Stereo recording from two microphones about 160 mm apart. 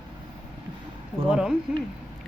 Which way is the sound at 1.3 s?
5° right (ahead or behind).